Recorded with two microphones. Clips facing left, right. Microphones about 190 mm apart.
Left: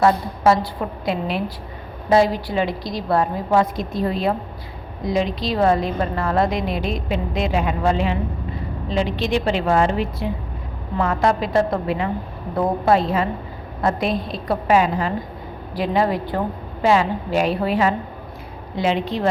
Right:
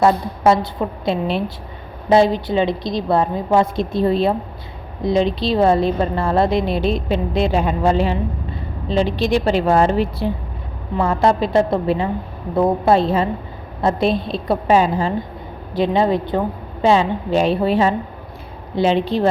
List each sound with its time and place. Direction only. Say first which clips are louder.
0.0 s a woman's voice: right 2 dB; 25° right (ahead or behind)